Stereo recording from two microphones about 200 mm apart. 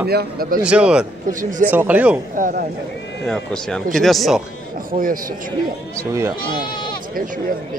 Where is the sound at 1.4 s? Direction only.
40° right (ahead or behind).